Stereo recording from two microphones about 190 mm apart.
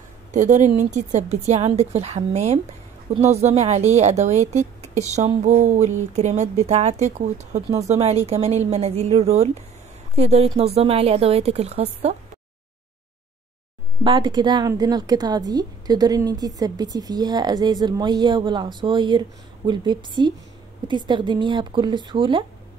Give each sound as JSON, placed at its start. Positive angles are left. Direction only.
{"t": 0.3, "sound": "a woman's voice", "side_deg": -40}
{"t": 14.0, "sound": "a woman's voice", "side_deg": -25}